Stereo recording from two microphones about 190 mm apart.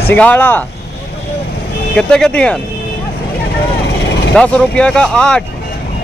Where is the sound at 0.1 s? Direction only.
10° left (ahead or behind).